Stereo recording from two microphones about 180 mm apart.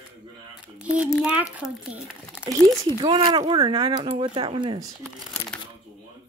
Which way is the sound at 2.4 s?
20° right (ahead or behind).